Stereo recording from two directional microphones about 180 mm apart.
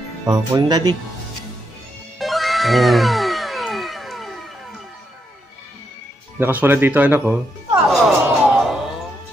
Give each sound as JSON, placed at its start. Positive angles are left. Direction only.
{"t": 0.3, "sound": "speech", "side_deg": -20}
{"t": 2.1, "sound": "music", "side_deg": 0}
{"t": 6.4, "sound": "speech", "side_deg": -10}
{"t": 7.9, "sound": "music", "side_deg": 0}